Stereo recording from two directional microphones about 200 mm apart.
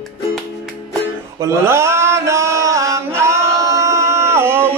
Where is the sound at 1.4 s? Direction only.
15° right (ahead or behind).